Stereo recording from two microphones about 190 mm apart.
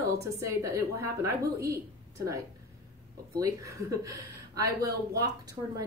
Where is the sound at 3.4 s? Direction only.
15° right (ahead or behind).